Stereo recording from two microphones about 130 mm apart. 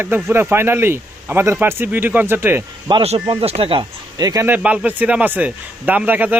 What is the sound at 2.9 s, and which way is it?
Speech, 35° right (ahead or behind).